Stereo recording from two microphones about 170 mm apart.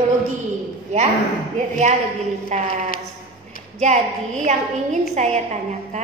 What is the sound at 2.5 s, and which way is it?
Speech, 45° right (ahead or behind).